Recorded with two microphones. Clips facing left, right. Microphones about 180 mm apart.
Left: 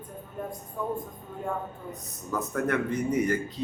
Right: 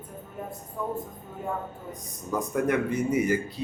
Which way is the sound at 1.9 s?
15° right (ahead or behind).